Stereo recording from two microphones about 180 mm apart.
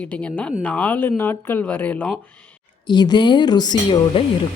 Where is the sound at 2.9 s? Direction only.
25° left (ahead or behind).